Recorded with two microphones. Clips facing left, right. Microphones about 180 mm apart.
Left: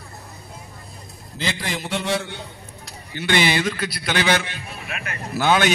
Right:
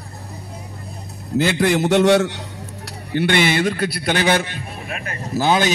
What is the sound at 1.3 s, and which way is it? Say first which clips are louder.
A man's voice: right 11 dB; 60° right (ahead or behind).